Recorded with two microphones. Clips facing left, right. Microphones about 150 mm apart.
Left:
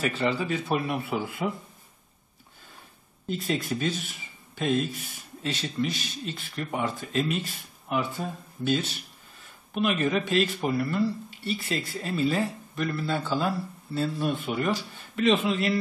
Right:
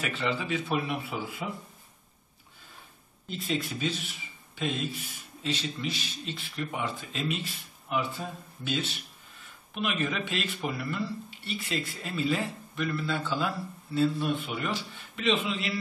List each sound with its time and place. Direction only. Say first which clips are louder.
0.0 s speech: left 4 dB; 40° left (ahead or behind)
3.4 s speech: left 2 dB; 45° left (ahead or behind)